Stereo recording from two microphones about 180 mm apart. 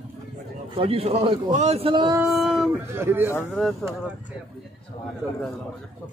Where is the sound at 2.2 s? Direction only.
Centre (ahead or behind).